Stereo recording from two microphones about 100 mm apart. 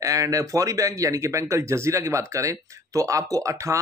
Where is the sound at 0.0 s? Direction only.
35° right (ahead or behind).